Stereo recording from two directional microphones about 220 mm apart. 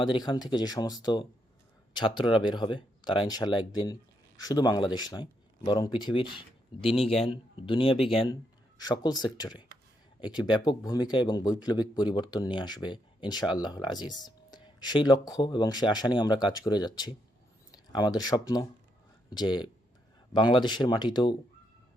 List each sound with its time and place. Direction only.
0.0 s speech: 20° left (ahead or behind)